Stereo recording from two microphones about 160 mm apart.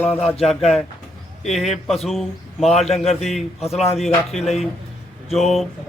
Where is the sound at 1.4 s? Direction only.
Centre (ahead or behind).